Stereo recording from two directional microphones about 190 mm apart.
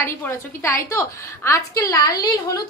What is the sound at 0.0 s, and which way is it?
A woman's voice, 10° left (ahead or behind).